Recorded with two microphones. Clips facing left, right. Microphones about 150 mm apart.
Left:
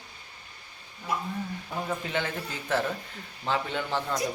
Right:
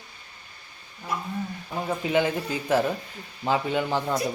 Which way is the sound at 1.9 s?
15° right (ahead or behind).